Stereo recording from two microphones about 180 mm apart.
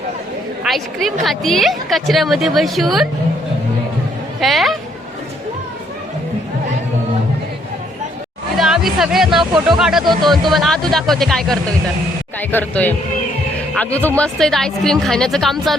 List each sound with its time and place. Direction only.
0.6 s a woman's voice: centre (ahead or behind)
4.4 s speech: centre (ahead or behind)
8.5 s speech: centre (ahead or behind)
9.4 s speech: 25° right (ahead or behind)
9.7 s speech: centre (ahead or behind)